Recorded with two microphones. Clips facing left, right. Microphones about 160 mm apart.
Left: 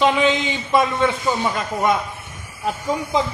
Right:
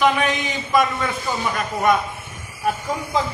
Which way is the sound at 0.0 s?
25° left (ahead or behind).